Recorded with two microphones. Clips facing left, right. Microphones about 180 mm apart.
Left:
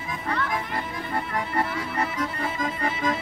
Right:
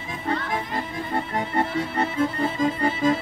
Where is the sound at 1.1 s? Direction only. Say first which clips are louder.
Right 2 dB; 25° right (ahead or behind).